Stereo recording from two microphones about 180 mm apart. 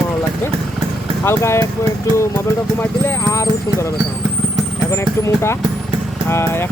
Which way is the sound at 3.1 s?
15° left (ahead or behind).